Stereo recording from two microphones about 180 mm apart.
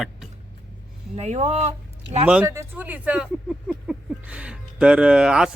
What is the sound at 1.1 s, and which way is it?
Speech, 35° right (ahead or behind).